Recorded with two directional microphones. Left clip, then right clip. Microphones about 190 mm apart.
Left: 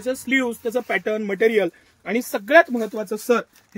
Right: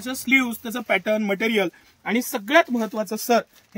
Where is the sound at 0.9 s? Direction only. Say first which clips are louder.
Right 2 dB; 65° right (ahead or behind).